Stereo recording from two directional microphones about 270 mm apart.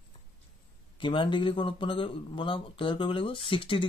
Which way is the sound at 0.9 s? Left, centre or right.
Centre.